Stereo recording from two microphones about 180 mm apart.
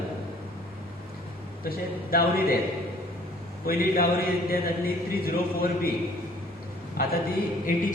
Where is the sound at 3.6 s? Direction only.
55° left (ahead or behind).